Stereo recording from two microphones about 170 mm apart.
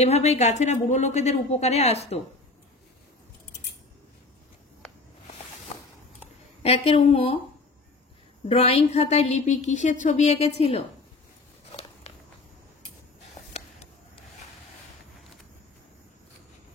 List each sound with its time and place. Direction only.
0.0 s a woman's voice: 40° left (ahead or behind)
5.7 s a sound: 35° left (ahead or behind)
6.6 s a woman's voice: 35° left (ahead or behind)
8.5 s a woman's voice: 35° left (ahead or behind)